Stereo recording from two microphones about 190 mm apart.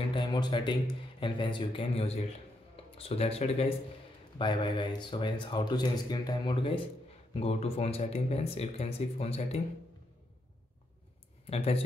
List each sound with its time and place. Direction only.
0.1 s speech: 25° left (ahead or behind)
11.5 s speech: 30° left (ahead or behind)